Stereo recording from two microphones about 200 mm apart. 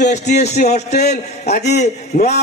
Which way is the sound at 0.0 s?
35° left (ahead or behind).